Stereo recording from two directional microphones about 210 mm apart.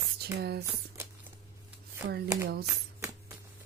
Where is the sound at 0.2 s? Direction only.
50° right (ahead or behind).